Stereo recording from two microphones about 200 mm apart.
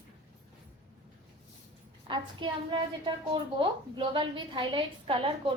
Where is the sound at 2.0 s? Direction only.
25° right (ahead or behind).